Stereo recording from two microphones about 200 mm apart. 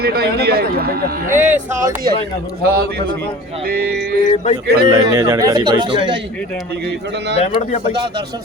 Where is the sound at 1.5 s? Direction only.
40° right (ahead or behind).